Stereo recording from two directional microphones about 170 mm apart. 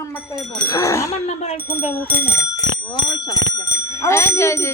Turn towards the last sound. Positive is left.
turn(degrees=15)  # may be behind; listen again after turning